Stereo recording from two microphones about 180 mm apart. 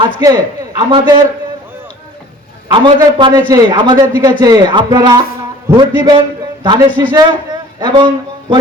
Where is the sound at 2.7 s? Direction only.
25° right (ahead or behind).